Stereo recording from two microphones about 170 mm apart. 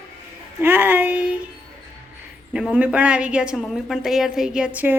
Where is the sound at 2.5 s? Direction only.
5° right (ahead or behind).